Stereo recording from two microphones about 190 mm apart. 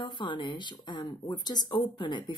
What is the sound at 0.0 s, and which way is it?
A woman's voice, 25° left (ahead or behind).